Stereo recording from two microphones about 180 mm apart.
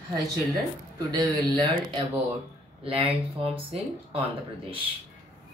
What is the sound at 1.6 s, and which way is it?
Speech, 25° right (ahead or behind).